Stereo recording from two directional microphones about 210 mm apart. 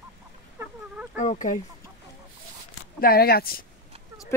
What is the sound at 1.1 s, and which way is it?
Speech, 35° left (ahead or behind).